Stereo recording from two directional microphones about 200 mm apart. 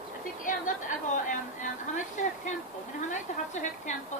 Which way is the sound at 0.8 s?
40° left (ahead or behind).